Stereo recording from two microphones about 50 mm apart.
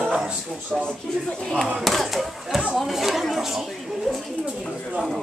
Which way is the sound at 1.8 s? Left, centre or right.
Centre.